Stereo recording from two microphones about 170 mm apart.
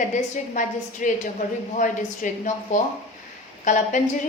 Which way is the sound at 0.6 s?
45° left (ahead or behind).